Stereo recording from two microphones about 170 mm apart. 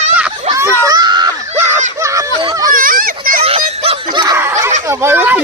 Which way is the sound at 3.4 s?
35° right (ahead or behind).